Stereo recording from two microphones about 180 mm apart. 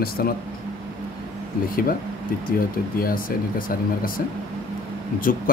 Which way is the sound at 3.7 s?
50° left (ahead or behind).